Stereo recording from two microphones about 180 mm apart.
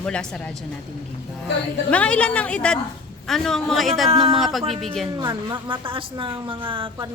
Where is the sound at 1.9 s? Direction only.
5° left (ahead or behind).